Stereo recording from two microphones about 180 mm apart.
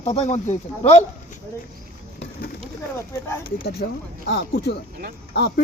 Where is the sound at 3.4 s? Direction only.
60° left (ahead or behind).